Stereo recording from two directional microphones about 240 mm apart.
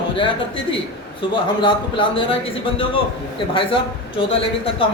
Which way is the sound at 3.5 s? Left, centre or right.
Left.